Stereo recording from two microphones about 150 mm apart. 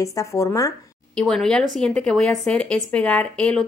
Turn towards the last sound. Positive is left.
turn(degrees=5)  # may be behind; listen again after turning